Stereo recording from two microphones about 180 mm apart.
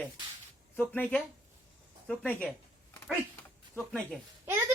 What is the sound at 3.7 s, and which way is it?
Speech, 5° left (ahead or behind).